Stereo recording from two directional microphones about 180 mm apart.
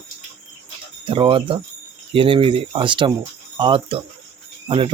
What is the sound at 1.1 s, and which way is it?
Speech, 30° right (ahead or behind).